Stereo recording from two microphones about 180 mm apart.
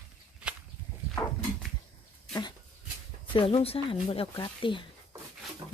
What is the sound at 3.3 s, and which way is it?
Speech, 30° left (ahead or behind).